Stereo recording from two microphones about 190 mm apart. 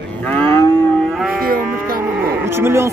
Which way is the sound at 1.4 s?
50° right (ahead or behind).